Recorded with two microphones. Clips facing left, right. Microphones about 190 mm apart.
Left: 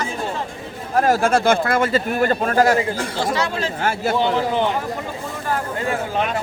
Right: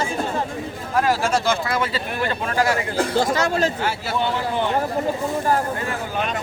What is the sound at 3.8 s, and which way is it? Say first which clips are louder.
Speech: left 4 dB; 50° left (ahead or behind).